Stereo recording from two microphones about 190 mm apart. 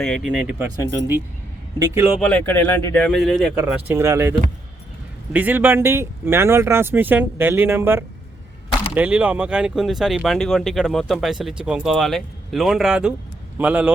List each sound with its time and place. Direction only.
0.0 s speech: centre (ahead or behind)
2.2 s speech: 10° left (ahead or behind); by 13.9 s 5° right (ahead or behind)